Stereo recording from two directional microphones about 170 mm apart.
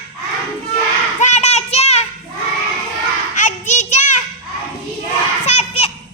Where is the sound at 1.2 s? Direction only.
40° left (ahead or behind).